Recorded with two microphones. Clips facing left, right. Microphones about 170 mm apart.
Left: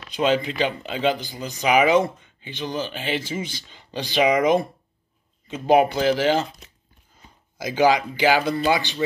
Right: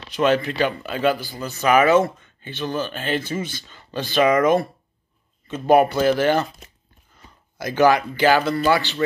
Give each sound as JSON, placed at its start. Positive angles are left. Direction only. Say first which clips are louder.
{"t": 0.4, "sound": "speech", "louder": "right 2 dB", "side_deg": 20}
{"t": 3.1, "sound": "speech", "louder": "right 3 dB", "side_deg": -50}
{"t": 3.7, "sound": "speech", "louder": "right 2 dB", "side_deg": 15}
{"t": 5.7, "sound": "speech", "louder": "right 2 dB", "side_deg": -50}
{"t": 7.5, "sound": "speech", "louder": "right 2 dB", "side_deg": 10}